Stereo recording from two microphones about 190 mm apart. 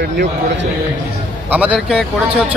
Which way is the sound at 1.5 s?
5° right (ahead or behind).